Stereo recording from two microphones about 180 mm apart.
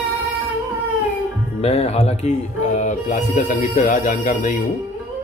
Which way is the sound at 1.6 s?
35° left (ahead or behind).